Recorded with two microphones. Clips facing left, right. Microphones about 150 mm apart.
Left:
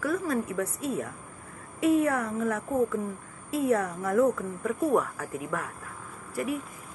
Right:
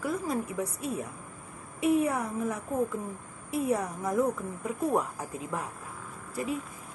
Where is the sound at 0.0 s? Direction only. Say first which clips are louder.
Left 3 dB; 15° right (ahead or behind).